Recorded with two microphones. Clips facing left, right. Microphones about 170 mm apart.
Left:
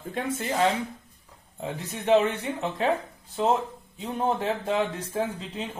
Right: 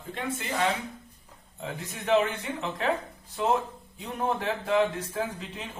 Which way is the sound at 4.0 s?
30° left (ahead or behind).